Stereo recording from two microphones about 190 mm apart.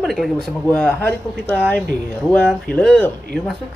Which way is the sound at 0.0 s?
Centre (ahead or behind).